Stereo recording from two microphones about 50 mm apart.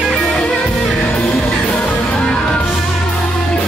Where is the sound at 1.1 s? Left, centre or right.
Centre.